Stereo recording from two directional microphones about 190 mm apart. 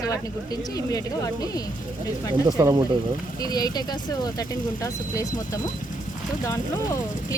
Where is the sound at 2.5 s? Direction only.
20° right (ahead or behind).